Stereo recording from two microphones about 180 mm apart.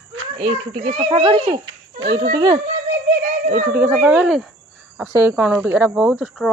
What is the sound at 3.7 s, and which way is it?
A woman's voice, 10° right (ahead or behind).